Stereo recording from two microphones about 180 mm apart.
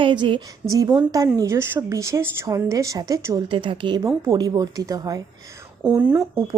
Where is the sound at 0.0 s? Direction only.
25° right (ahead or behind).